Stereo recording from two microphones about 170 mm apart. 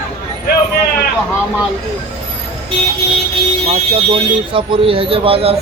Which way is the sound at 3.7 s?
30° right (ahead or behind).